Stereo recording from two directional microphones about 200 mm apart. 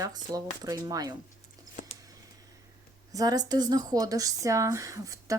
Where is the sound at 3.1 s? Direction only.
20° right (ahead or behind).